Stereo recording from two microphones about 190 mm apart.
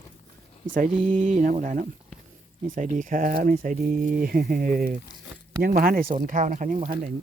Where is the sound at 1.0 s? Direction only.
40° right (ahead or behind).